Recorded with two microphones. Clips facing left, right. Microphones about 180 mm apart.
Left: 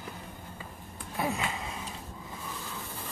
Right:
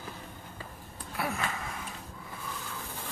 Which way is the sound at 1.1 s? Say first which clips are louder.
Left 2 dB; 20° left (ahead or behind).